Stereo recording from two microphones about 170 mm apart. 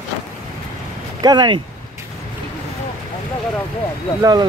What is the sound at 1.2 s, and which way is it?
Speech, 25° right (ahead or behind).